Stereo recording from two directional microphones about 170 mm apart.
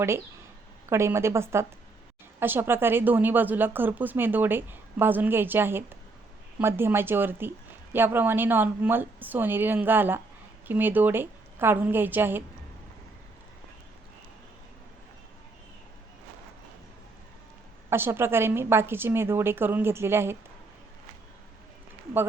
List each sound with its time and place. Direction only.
0.9 s speech: 15° right (ahead or behind)
17.8 s speech: 15° right (ahead or behind)